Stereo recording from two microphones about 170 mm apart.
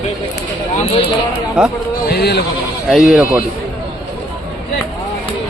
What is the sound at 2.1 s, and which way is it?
Speech, 70° left (ahead or behind).